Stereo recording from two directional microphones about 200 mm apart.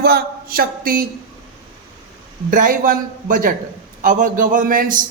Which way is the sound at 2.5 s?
45° right (ahead or behind).